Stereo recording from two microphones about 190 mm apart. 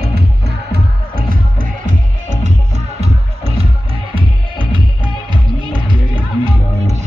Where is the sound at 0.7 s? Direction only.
50° right (ahead or behind).